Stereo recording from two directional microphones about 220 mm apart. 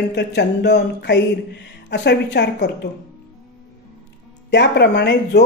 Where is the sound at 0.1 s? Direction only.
50° left (ahead or behind).